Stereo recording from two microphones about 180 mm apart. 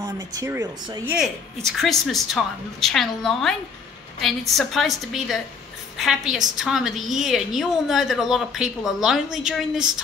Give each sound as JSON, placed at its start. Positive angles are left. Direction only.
{"t": 0.0, "sound": "speech", "side_deg": -20}
{"t": 1.7, "sound": "a woman's voice", "side_deg": 0}